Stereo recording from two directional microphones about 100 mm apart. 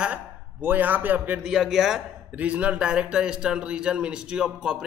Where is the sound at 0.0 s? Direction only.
15° right (ahead or behind).